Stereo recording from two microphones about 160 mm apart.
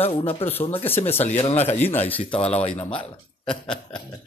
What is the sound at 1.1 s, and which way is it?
A man's voice, 40° left (ahead or behind).